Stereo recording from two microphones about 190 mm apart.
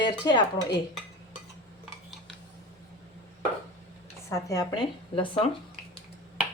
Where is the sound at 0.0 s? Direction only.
25° left (ahead or behind).